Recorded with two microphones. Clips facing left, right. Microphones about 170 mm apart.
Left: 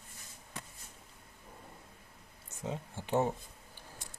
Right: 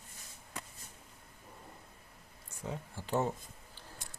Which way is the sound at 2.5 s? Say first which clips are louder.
Left 2 dB; 20° left (ahead or behind).